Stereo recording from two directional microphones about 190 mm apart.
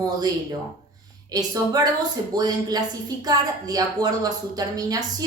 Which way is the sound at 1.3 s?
20° right (ahead or behind).